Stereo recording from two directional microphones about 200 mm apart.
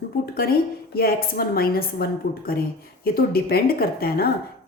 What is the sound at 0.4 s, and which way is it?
A woman's voice, 50° left (ahead or behind).